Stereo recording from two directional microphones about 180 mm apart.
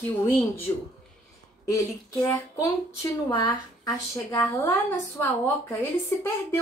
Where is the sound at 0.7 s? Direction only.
15° left (ahead or behind).